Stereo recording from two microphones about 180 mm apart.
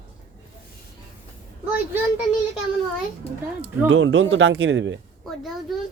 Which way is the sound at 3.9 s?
90° right.